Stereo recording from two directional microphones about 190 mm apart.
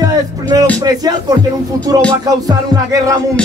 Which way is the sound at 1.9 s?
20° right (ahead or behind).